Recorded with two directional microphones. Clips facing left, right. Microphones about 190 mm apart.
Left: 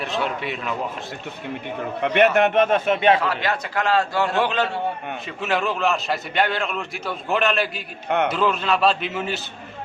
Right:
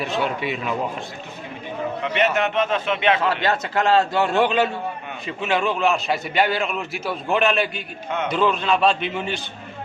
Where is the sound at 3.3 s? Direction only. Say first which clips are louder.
Right 3 dB; 25° right (ahead or behind).